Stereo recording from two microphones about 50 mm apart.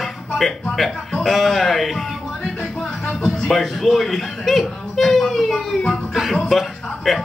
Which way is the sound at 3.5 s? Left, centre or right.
Centre.